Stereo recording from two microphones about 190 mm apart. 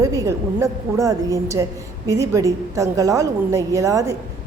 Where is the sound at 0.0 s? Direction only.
15° right (ahead or behind).